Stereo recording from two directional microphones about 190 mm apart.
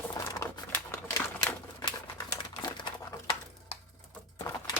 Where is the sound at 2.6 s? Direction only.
25° left (ahead or behind).